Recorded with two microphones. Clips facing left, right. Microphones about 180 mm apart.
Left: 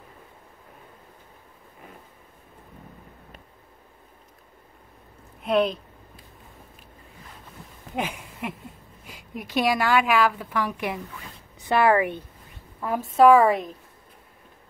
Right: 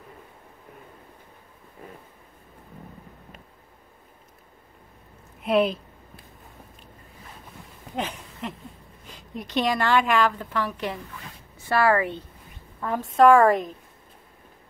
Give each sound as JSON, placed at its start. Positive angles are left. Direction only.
{"t": 5.4, "sound": "speech", "side_deg": 0}
{"t": 7.9, "sound": "a sound", "side_deg": 10}
{"t": 9.0, "sound": "a woman's voice", "side_deg": 10}
{"t": 13.1, "sound": "a woman's voice", "side_deg": 5}